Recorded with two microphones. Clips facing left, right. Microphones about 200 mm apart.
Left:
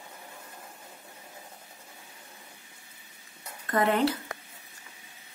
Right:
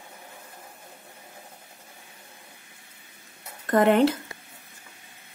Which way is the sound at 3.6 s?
45° right (ahead or behind).